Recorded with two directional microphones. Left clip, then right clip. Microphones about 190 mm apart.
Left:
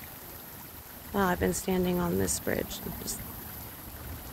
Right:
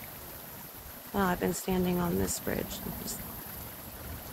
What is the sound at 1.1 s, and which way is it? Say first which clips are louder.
Speech: left 2 dB; 20° left (ahead or behind).